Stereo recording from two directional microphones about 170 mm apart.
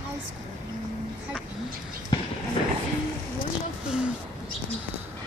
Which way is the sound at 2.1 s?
25° left (ahead or behind).